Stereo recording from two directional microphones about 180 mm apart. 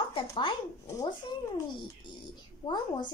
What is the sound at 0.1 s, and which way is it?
Speech, 25° left (ahead or behind).